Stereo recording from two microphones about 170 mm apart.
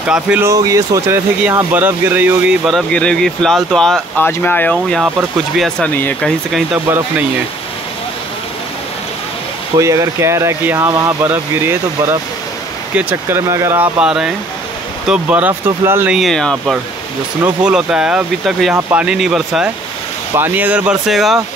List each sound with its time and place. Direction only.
0.1 s speech: 5° right (ahead or behind)
0.5 s speech: 20° right (ahead or behind)
2.6 s speech: 5° left (ahead or behind)
6.5 s speech: 5° right (ahead or behind)
9.8 s speech: 15° right (ahead or behind)
16.2 s speech: centre (ahead or behind)